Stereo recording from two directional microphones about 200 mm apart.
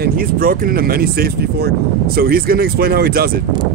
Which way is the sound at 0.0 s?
45° right (ahead or behind).